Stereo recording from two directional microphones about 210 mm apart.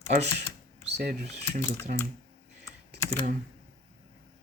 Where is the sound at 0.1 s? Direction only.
50° right (ahead or behind).